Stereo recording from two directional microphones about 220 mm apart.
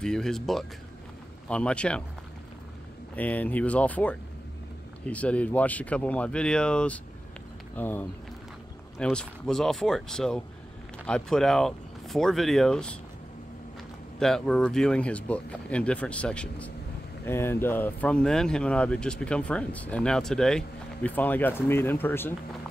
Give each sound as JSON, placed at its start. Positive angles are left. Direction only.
{"t": 0.0, "sound": "speech", "side_deg": 0}
{"t": 3.2, "sound": "speech", "side_deg": 5}
{"t": 14.2, "sound": "speech", "side_deg": 0}